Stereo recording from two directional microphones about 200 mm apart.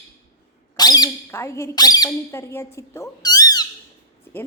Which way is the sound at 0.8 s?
20° left (ahead or behind).